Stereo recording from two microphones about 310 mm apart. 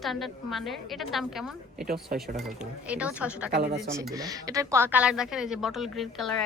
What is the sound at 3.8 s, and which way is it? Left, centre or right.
A woman's voice, centre.